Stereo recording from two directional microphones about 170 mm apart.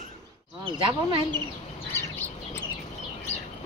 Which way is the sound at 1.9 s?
15° left (ahead or behind).